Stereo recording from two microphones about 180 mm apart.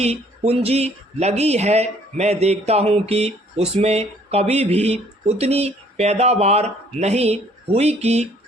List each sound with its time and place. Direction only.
0.0 s speech: 35° right (ahead or behind)